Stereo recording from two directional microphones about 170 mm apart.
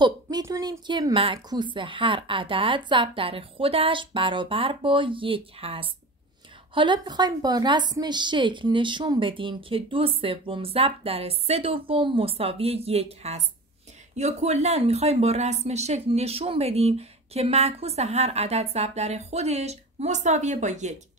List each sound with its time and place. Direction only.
0.0 s speech: 25° right (ahead or behind); by 20.9 s 45° right (ahead or behind)